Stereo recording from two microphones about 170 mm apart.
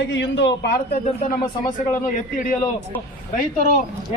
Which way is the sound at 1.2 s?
50° left (ahead or behind).